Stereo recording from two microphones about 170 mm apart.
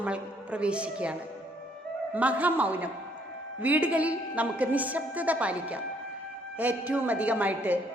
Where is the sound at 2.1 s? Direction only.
10° right (ahead or behind).